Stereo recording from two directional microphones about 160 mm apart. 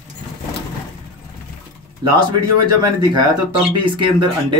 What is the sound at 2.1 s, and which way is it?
Speech, 30° right (ahead or behind).